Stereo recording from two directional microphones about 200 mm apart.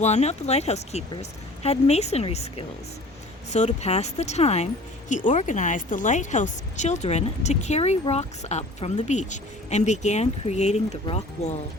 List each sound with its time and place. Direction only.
0.0 s speech: 35° left (ahead or behind)